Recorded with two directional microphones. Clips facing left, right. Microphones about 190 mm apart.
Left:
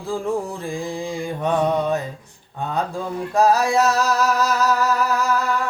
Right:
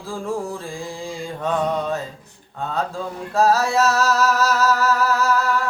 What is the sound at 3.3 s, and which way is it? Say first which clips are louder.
Music: left 1 dB; 15° left (ahead or behind).